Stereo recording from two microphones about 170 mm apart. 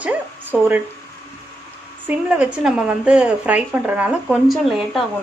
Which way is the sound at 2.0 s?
5° right (ahead or behind).